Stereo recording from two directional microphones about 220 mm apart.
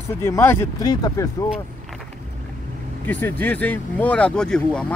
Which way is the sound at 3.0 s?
10° left (ahead or behind).